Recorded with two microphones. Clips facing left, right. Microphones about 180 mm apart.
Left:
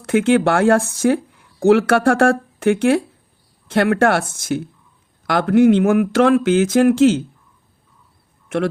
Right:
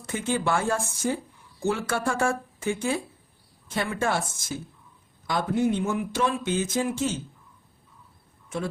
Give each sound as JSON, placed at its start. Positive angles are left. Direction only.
{"t": 0.0, "sound": "speech", "side_deg": 80}